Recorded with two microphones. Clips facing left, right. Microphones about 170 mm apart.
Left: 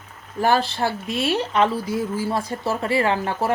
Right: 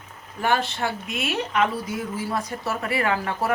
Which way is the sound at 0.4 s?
35° left (ahead or behind).